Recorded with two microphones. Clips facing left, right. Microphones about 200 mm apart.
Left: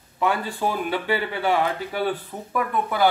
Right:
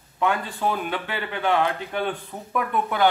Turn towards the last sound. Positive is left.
turn(degrees=0)  # may be behind; listen again after turning